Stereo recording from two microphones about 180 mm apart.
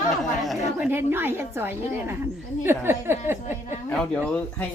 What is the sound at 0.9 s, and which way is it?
A woman's voice, 10° right (ahead or behind).